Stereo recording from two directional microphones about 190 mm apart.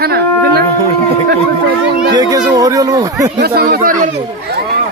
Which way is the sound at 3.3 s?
55° right (ahead or behind).